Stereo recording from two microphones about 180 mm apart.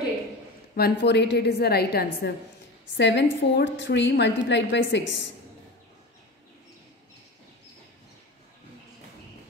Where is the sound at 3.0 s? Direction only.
75° left (ahead or behind).